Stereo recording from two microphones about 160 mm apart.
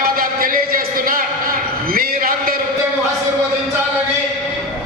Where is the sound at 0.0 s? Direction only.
65° right (ahead or behind).